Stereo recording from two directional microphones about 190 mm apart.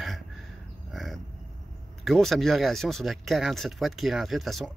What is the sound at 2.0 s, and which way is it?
Speech, centre (ahead or behind).